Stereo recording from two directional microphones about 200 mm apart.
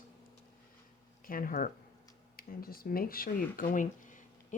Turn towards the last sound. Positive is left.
turn(degrees=40)  # may be behind; listen again after turning